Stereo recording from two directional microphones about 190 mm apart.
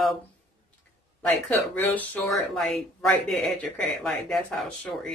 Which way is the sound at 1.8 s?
10° left (ahead or behind).